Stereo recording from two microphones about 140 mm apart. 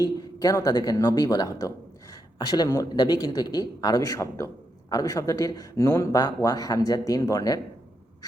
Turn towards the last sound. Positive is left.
turn(degrees=25)  # may be behind; listen again after turning